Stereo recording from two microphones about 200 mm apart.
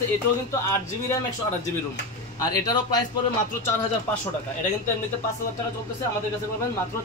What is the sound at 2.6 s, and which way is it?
Speech, 20° left (ahead or behind).